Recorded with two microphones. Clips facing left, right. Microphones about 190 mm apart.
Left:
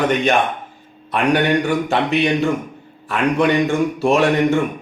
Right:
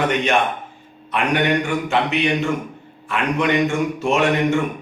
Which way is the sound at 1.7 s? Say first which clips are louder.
Left 2 dB; 35° left (ahead or behind).